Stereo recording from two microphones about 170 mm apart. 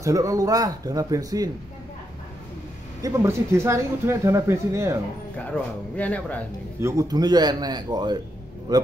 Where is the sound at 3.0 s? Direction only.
15° right (ahead or behind).